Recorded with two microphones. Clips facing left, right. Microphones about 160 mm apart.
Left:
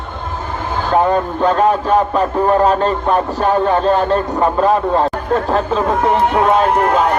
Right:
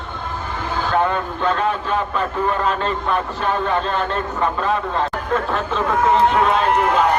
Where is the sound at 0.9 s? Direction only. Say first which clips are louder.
Left 6 dB; 35° left (ahead or behind).